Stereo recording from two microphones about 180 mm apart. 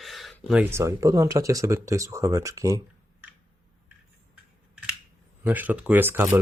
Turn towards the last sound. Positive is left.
turn(degrees=-10)  # may be behind; listen again after turning